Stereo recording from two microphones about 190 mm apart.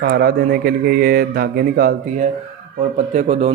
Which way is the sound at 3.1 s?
35° right (ahead or behind).